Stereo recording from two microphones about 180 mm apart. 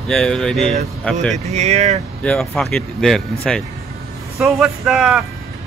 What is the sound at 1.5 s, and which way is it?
Speech, 40° right (ahead or behind).